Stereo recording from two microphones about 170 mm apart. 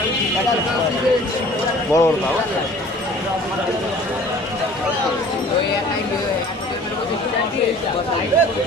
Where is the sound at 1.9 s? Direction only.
15° left (ahead or behind).